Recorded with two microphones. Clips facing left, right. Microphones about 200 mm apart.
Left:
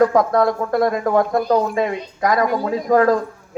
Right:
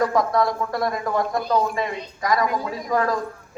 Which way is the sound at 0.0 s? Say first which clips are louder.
Left 5 dB; 55° left (ahead or behind).